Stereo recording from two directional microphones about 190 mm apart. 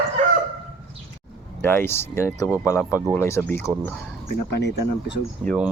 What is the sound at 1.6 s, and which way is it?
Speech, 10° left (ahead or behind).